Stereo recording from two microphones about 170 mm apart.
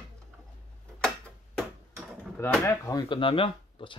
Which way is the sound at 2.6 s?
20° left (ahead or behind).